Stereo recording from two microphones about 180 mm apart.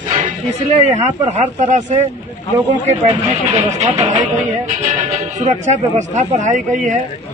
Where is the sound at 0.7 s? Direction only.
40° right (ahead or behind).